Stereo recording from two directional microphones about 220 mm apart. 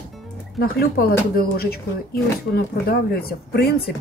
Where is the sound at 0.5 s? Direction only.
45° left (ahead or behind).